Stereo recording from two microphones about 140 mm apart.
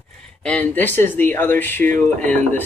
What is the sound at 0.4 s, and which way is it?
Speech, 5° left (ahead or behind).